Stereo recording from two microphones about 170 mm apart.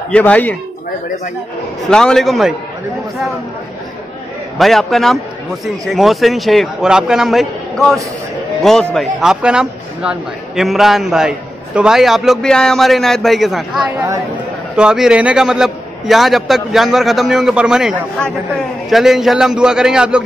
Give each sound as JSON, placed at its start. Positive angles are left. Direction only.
{"t": 0.1, "sound": "speech", "side_deg": 10}
{"t": 1.9, "sound": "a man's voice", "side_deg": 5}
{"t": 4.6, "sound": "a man's voice", "side_deg": 0}
{"t": 13.9, "sound": "speech", "side_deg": -20}
{"t": 14.8, "sound": "a man's voice", "side_deg": -5}